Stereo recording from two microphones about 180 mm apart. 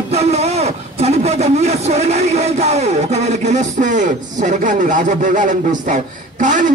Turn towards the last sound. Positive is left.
turn(degrees=-45)  # may be behind; listen again after turning